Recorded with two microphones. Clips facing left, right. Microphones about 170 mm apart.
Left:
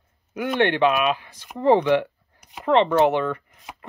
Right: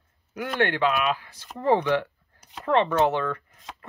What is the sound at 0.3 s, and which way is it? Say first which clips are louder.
Speech: left 4 dB; 20° left (ahead or behind).